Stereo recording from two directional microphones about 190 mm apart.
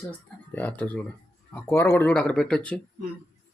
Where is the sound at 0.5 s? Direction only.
10° left (ahead or behind).